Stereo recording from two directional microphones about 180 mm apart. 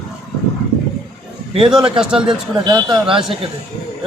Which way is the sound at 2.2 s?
25° right (ahead or behind).